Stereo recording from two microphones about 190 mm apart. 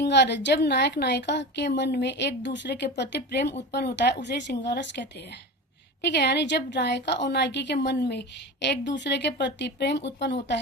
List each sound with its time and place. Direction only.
0.0 s a woman's voice: 65° left (ahead or behind)